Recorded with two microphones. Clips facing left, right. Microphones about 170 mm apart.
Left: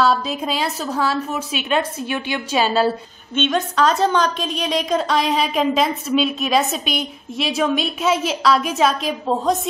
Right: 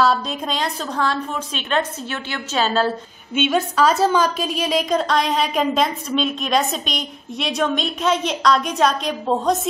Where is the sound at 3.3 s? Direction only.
5° right (ahead or behind).